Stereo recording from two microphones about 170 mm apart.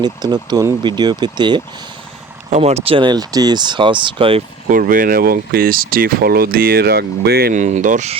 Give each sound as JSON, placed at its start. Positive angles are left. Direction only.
{"t": 0.0, "sound": "speech", "side_deg": -25}
{"t": 2.5, "sound": "speech", "side_deg": -40}
{"t": 4.7, "sound": "speech", "side_deg": -55}
{"t": 7.5, "sound": "speech", "side_deg": -45}